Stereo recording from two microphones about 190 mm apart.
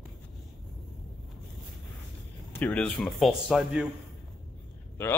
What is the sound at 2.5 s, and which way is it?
Speech, 5° left (ahead or behind).